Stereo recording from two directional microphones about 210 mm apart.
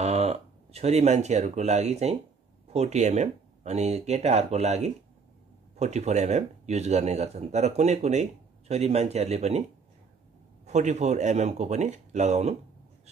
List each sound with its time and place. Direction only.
0.0 s speech: 30° right (ahead or behind)
10.6 s speech: 35° right (ahead or behind)